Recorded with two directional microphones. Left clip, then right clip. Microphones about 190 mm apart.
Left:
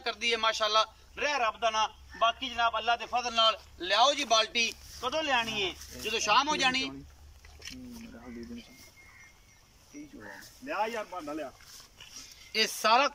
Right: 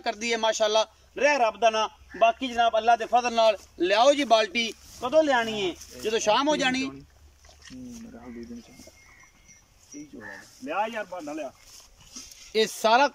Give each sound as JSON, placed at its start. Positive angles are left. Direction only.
{"t": 0.0, "sound": "a man's voice", "side_deg": -35}
{"t": 5.8, "sound": "speech", "side_deg": -5}
{"t": 6.0, "sound": "a man's voice", "side_deg": -40}
{"t": 7.6, "sound": "a sound", "side_deg": 15}
{"t": 10.6, "sound": "speech", "side_deg": -15}
{"t": 12.5, "sound": "speech", "side_deg": -20}